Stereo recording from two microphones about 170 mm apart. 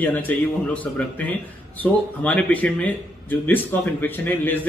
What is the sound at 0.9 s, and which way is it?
Speech, 10° left (ahead or behind).